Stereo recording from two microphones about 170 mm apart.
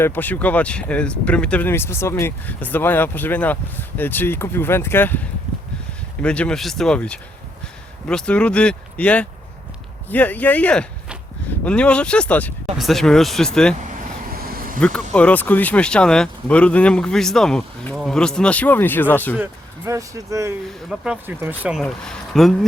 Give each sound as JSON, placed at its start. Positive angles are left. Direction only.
{"t": 0.0, "sound": "speech", "side_deg": 10}
{"t": 6.2, "sound": "speech", "side_deg": 5}
{"t": 14.3, "sound": "a sound", "side_deg": -60}
{"t": 14.8, "sound": "speech", "side_deg": 5}
{"t": 19.4, "sound": "speech", "side_deg": -20}
{"t": 20.9, "sound": "speech", "side_deg": -5}
{"t": 21.8, "sound": "speech", "side_deg": 5}